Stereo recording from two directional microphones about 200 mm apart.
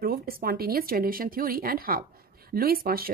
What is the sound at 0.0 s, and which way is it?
A woman's voice, 50° right (ahead or behind).